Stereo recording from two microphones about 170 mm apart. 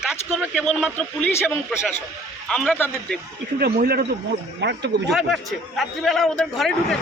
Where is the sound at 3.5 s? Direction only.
60° right (ahead or behind).